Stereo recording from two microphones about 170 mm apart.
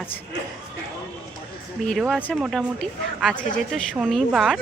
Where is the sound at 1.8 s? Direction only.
5° left (ahead or behind).